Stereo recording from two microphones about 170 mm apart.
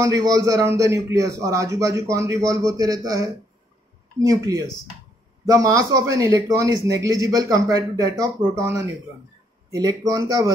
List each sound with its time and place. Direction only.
0.0 s speech: 20° right (ahead or behind)